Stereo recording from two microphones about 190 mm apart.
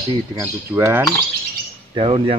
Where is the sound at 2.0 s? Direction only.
30° right (ahead or behind).